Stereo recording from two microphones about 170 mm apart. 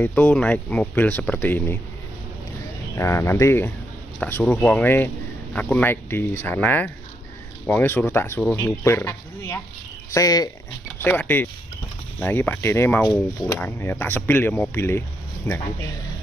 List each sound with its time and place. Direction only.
0.0 s speech: 10° left (ahead or behind)
3.0 s speech: 15° left (ahead or behind)
11.0 s speech: 10° left (ahead or behind)